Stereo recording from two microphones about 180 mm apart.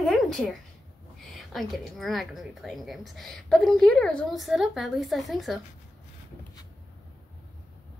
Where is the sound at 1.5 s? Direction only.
Centre (ahead or behind).